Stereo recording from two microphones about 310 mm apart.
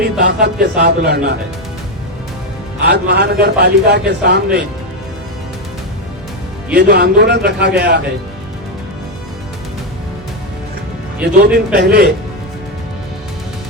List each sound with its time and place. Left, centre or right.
0.2 s a man's voice: right
2.8 s a man's voice: right
6.7 s a man's voice: right
11.2 s speech: centre
11.5 s a man's voice: right